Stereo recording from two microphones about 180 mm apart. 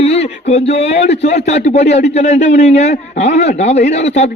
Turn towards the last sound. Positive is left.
turn(degrees=40)  # may be behind; listen again after turning